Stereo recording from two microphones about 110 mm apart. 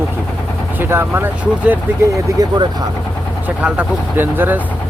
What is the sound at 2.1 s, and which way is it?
Speech, 40° right (ahead or behind).